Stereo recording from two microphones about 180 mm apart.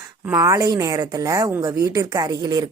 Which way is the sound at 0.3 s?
15° right (ahead or behind).